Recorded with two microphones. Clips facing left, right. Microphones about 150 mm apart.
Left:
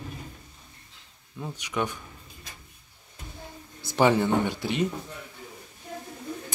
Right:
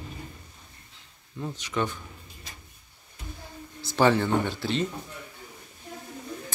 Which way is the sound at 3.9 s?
15° left (ahead or behind).